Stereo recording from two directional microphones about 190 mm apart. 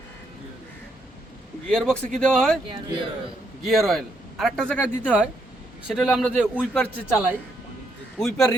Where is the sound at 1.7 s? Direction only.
5° left (ahead or behind).